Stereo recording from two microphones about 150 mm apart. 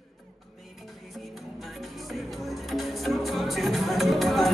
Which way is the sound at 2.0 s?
Centre (ahead or behind).